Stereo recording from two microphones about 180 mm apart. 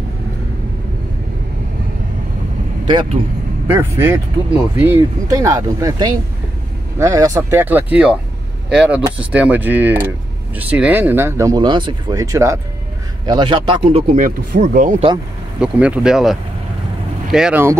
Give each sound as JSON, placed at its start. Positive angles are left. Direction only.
{"t": 3.6, "sound": "speech", "side_deg": -15}
{"t": 14.1, "sound": "speech", "side_deg": -45}
{"t": 15.6, "sound": "speech", "side_deg": -5}